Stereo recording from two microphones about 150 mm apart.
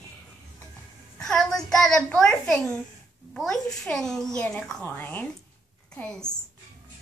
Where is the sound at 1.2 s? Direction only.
5° left (ahead or behind).